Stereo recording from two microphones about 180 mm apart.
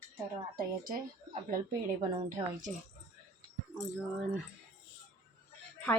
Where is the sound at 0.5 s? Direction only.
50° right (ahead or behind).